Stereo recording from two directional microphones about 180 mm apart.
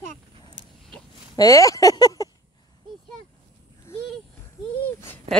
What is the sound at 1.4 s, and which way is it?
Speech, 20° left (ahead or behind).